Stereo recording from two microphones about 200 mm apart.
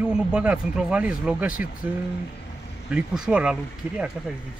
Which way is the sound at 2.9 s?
5° right (ahead or behind).